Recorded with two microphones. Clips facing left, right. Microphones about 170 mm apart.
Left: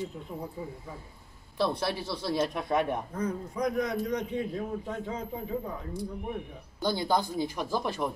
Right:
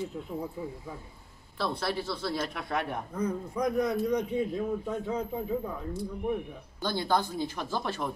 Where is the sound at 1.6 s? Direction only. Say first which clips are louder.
Left 2 dB; 20° left (ahead or behind).